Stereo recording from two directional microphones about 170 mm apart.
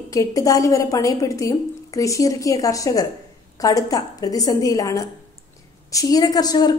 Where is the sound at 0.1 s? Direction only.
20° left (ahead or behind).